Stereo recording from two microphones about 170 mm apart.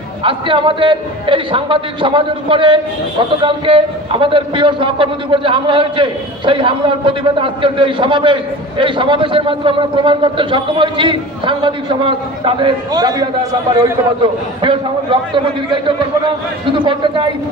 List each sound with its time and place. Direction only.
0.2 s a man's voice: 30° right (ahead or behind)